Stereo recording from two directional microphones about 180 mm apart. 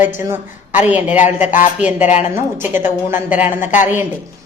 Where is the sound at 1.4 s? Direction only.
45° left (ahead or behind).